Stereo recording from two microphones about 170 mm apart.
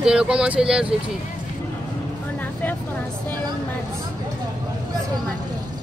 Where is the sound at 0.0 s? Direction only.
5° right (ahead or behind).